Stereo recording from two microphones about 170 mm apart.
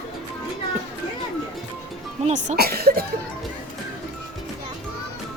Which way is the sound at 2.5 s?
65° right (ahead or behind).